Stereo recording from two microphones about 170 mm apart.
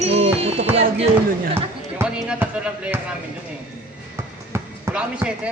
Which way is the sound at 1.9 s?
5° right (ahead or behind).